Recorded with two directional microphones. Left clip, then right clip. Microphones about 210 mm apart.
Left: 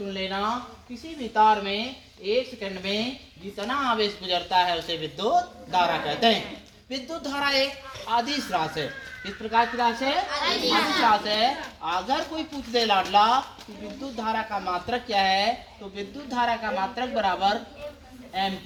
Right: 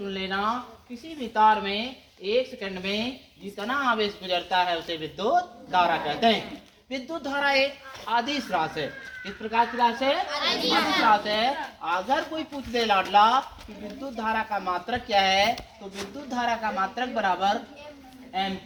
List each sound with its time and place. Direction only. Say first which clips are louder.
0.1 s a woman's voice: right 1 dB; 5° right (ahead or behind)
10.2 s a child's voice: left 1 dB; 55° right (ahead or behind)
11.1 s speech: even; 10° left (ahead or behind)